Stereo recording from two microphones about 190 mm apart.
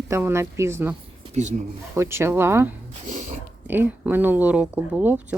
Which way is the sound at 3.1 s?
40° right (ahead or behind).